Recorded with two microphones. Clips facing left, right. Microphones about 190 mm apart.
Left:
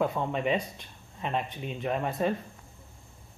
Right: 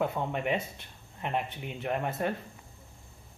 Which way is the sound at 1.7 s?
10° right (ahead or behind).